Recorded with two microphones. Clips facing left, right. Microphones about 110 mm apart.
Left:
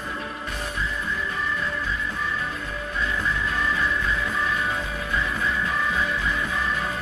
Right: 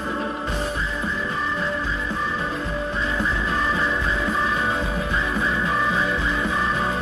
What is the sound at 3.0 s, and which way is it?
Music, 30° right (ahead or behind).